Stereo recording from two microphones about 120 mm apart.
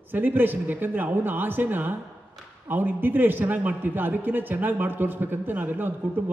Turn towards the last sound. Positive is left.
turn(degrees=-15)  # may be behind; listen again after turning